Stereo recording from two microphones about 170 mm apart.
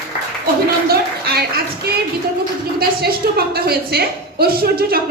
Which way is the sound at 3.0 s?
65° right (ahead or behind).